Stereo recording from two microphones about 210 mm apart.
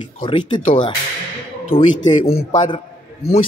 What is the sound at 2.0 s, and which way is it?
Speech, 25° left (ahead or behind).